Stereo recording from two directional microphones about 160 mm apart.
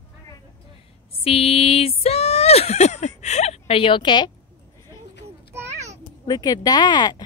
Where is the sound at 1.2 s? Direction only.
40° left (ahead or behind).